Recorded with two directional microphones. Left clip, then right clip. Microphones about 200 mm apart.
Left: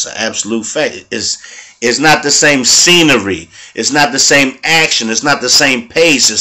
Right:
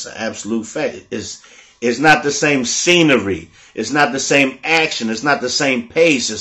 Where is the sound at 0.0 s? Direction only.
5° left (ahead or behind).